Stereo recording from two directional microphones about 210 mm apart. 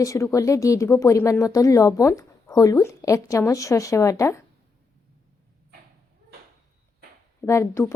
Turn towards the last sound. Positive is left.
turn(degrees=15)  # may be behind; listen again after turning